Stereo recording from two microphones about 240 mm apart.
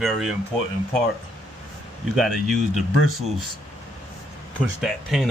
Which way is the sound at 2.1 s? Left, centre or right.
Centre.